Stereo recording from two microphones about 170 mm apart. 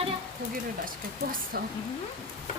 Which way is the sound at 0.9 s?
55° right (ahead or behind).